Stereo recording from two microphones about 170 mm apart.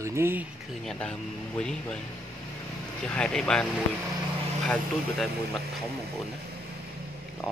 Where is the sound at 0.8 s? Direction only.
5° left (ahead or behind).